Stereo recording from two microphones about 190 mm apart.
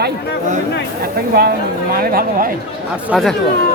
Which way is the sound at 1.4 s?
55° right (ahead or behind).